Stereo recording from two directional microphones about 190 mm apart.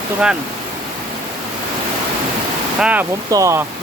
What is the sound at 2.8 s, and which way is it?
Speech, 5° right (ahead or behind).